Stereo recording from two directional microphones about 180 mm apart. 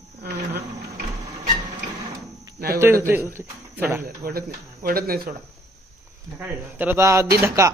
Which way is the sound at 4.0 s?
55° right (ahead or behind).